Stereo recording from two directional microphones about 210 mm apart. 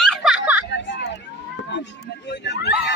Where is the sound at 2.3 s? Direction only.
55° left (ahead or behind).